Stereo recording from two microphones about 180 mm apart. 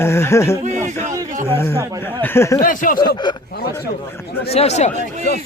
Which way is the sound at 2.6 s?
50° left (ahead or behind).